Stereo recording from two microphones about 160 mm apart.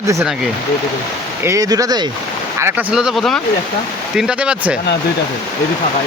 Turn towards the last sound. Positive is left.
turn(degrees=-5)  # may be behind; listen again after turning